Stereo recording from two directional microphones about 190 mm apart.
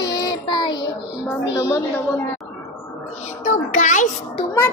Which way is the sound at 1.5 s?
15° left (ahead or behind).